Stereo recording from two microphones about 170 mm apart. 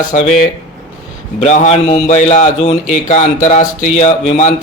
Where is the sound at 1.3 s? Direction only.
40° left (ahead or behind).